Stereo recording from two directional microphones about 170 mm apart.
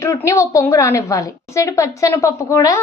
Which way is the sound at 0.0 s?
15° left (ahead or behind).